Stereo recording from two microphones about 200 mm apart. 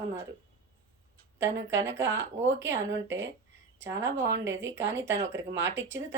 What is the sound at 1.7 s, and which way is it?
Speech, 65° right (ahead or behind).